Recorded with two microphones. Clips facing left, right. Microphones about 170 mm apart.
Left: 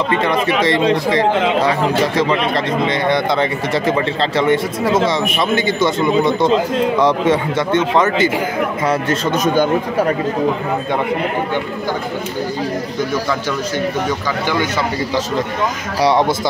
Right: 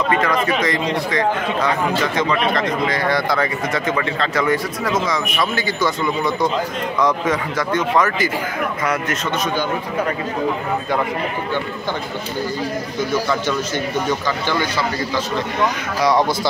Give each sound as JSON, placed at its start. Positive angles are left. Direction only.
{"t": 0.1, "sound": "speech", "side_deg": 30}
{"t": 9.4, "sound": "speech", "side_deg": 45}
{"t": 16.0, "sound": "speech", "side_deg": 25}